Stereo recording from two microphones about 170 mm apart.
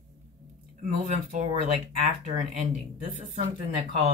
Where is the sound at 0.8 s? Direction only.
50° right (ahead or behind).